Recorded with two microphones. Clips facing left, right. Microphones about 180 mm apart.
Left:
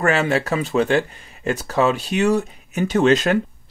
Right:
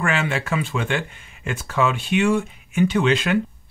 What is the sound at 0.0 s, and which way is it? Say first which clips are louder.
Speech: left 5 dB; 40° left (ahead or behind).